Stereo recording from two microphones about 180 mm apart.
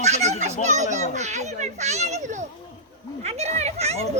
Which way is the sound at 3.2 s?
35° right (ahead or behind).